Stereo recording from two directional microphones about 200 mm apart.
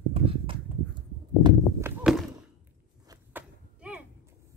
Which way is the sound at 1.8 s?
Centre (ahead or behind).